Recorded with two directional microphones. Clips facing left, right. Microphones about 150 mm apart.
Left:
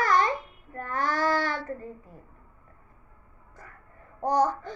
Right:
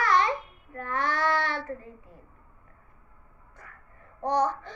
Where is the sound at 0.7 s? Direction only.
40° left (ahead or behind).